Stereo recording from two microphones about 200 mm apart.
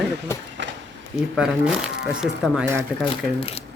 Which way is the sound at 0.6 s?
60° right (ahead or behind).